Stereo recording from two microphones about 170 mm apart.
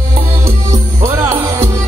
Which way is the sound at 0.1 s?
20° right (ahead or behind).